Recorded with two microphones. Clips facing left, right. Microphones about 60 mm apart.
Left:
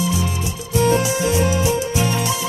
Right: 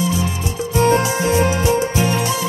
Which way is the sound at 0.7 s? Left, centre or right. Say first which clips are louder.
Right 1 dB; right.